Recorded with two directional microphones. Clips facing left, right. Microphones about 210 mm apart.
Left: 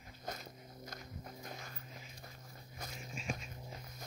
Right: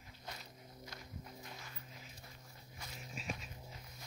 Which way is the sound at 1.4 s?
45° left (ahead or behind).